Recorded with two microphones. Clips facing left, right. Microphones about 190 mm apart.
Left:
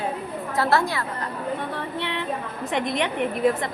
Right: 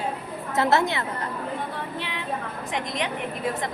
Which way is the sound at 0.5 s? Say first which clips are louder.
Right 1 dB; 20° right (ahead or behind).